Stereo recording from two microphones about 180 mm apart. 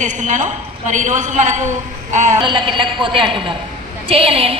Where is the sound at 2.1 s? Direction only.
40° right (ahead or behind).